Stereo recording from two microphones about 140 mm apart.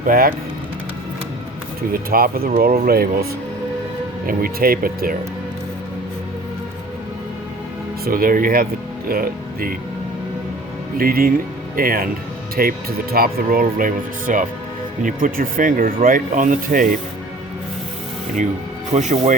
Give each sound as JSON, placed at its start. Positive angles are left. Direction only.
{"t": 0.0, "sound": "speech", "side_deg": -90}
{"t": 1.9, "sound": "speech", "side_deg": -90}
{"t": 4.3, "sound": "speech", "side_deg": -90}
{"t": 8.0, "sound": "speech", "side_deg": -90}
{"t": 10.9, "sound": "speech", "side_deg": -90}
{"t": 18.9, "sound": "speech", "side_deg": -60}